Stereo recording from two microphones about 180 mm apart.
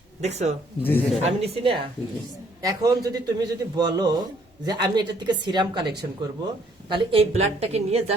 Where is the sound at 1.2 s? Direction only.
35° right (ahead or behind).